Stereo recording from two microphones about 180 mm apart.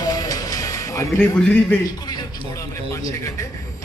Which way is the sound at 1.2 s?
5° left (ahead or behind).